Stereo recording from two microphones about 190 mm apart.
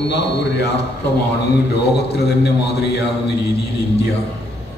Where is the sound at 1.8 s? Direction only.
60° left (ahead or behind).